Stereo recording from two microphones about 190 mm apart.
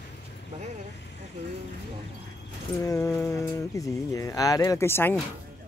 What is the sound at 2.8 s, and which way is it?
Speech, 15° left (ahead or behind).